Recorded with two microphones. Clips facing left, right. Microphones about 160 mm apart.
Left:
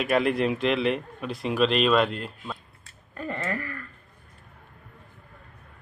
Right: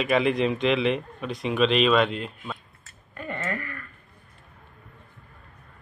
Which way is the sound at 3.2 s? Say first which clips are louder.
Left 1 dB; 30° left (ahead or behind).